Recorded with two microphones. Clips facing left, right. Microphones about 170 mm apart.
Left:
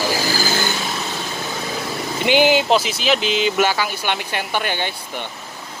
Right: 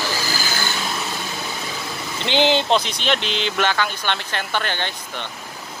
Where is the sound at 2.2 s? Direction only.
10° left (ahead or behind).